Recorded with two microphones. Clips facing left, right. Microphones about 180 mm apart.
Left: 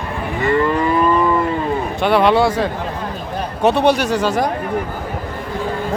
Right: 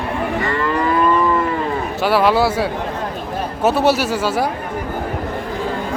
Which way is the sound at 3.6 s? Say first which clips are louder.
Left 1 dB; 5° right (ahead or behind).